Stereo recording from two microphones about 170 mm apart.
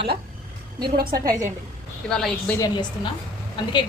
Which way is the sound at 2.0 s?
5° left (ahead or behind).